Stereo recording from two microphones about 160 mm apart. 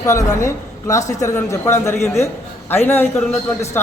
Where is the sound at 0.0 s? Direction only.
20° left (ahead or behind).